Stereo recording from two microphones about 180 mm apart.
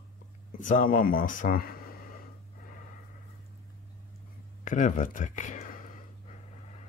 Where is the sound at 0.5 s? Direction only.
45° left (ahead or behind).